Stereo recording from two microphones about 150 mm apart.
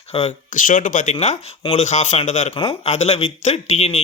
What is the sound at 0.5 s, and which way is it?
Speech, 60° left (ahead or behind).